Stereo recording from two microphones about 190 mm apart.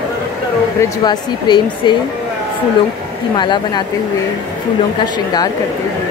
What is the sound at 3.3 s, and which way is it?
Speech, 25° left (ahead or behind).